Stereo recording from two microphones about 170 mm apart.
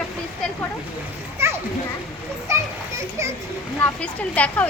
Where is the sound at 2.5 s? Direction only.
15° right (ahead or behind).